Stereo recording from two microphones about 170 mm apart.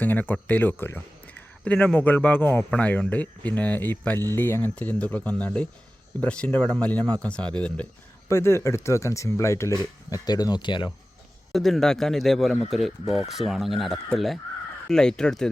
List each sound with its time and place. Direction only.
0.0 s speech: 10° left (ahead or behind); by 10.9 s 25° left (ahead or behind)
11.5 s speech: centre (ahead or behind)